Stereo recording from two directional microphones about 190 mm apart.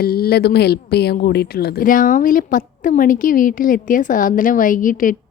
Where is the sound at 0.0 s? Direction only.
55° left (ahead or behind).